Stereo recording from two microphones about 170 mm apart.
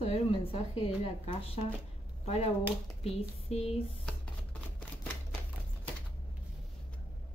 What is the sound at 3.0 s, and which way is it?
Speech, 40° left (ahead or behind).